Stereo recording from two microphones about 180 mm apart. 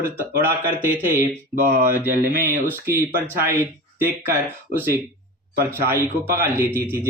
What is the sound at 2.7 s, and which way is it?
Speech, 10° right (ahead or behind).